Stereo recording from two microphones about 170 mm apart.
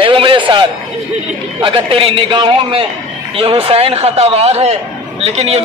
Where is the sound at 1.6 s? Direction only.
30° right (ahead or behind).